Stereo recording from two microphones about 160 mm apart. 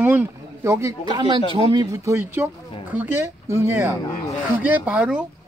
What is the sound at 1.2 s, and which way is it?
Speech, 30° right (ahead or behind).